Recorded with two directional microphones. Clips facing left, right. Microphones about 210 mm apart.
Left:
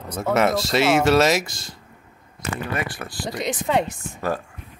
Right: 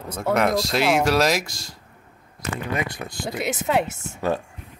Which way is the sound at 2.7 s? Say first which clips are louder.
Right 3 dB; 20° right (ahead or behind).